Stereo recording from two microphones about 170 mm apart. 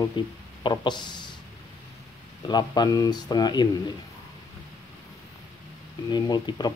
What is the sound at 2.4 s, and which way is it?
Speech, 25° left (ahead or behind).